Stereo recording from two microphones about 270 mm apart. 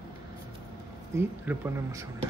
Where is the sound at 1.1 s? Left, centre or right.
Centre.